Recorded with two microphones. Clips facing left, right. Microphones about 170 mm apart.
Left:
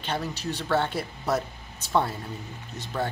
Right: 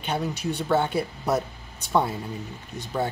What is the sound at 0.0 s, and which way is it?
Speech, 10° right (ahead or behind).